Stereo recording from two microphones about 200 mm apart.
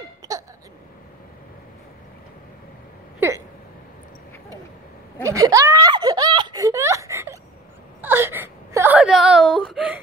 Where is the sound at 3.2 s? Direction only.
10° right (ahead or behind).